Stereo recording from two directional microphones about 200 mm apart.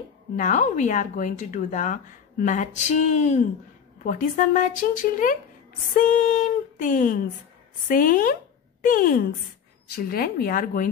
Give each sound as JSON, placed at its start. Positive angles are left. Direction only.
{"t": 0.4, "sound": "speech", "side_deg": 40}